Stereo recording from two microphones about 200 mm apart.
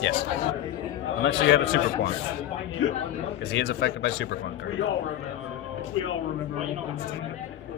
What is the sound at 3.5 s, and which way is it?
Speech, 65° left (ahead or behind).